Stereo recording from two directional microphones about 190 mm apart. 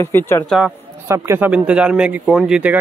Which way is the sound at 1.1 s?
10° right (ahead or behind).